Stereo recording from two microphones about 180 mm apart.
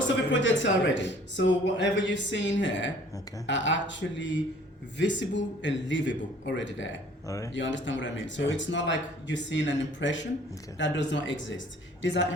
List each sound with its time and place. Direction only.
0.3 s speech: 85° left
7.3 s speech: 15° left (ahead or behind)
7.5 s speech: 90° left